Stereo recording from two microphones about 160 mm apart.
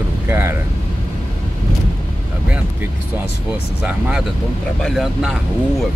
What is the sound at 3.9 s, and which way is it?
Speech, 5° right (ahead or behind).